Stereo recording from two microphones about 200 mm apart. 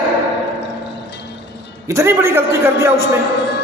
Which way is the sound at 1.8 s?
15° right (ahead or behind).